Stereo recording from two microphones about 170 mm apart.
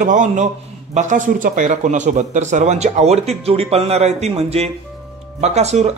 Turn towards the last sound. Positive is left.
turn(degrees=-40)  # may be behind; listen again after turning